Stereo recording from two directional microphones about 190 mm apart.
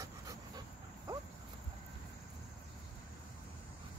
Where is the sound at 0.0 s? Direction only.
15° right (ahead or behind).